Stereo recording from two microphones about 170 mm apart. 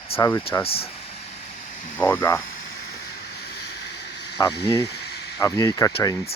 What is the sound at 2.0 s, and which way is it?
Speech, 10° left (ahead or behind).